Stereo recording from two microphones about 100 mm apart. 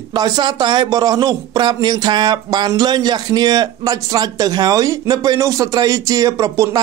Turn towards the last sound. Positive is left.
turn(degrees=-35)  # may be behind; listen again after turning